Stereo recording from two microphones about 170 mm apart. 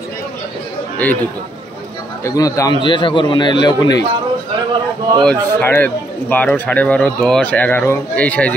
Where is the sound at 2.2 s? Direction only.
20° left (ahead or behind).